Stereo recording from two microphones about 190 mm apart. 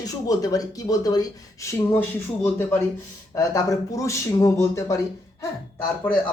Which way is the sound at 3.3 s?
15° left (ahead or behind).